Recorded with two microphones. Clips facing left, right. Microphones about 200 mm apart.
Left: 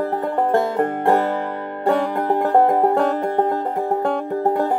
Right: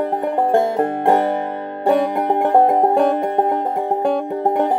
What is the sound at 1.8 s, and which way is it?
Music, 15° right (ahead or behind).